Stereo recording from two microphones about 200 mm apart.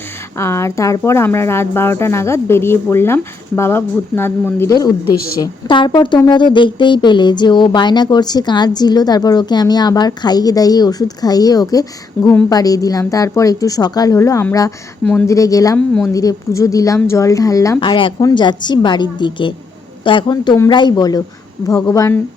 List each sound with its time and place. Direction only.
0.3 s speech: 15° left (ahead or behind)